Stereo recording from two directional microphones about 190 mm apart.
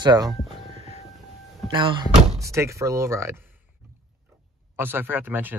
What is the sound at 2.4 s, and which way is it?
Speech, 15° right (ahead or behind).